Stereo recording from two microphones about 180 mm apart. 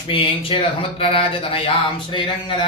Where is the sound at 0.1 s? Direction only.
30° left (ahead or behind).